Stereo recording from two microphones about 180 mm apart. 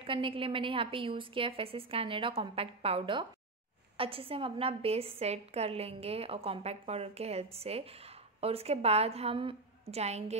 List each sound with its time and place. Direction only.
0.0 s a woman's voice: 30° right (ahead or behind)